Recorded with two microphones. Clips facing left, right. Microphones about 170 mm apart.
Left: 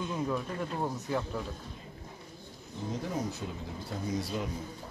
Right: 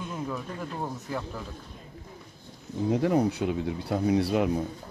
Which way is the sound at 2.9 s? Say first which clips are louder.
Right 11 dB; 70° right (ahead or behind).